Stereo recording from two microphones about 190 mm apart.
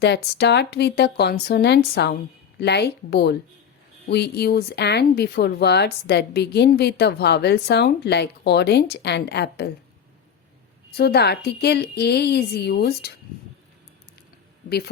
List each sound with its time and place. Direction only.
0.0 s speech: 60° left (ahead or behind)
10.9 s speech: 60° left (ahead or behind)